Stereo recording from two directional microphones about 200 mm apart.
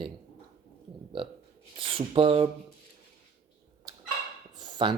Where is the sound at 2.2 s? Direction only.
25° right (ahead or behind).